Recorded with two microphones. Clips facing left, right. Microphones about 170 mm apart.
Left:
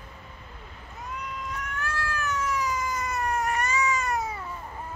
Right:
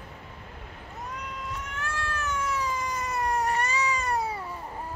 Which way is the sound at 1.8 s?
25° right (ahead or behind).